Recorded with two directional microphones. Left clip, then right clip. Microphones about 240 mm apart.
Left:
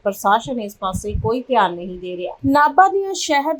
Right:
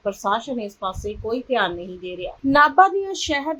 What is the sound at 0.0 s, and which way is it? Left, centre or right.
Speech, left.